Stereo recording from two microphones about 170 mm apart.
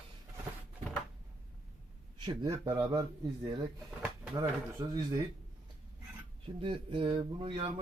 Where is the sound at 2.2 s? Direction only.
25° right (ahead or behind).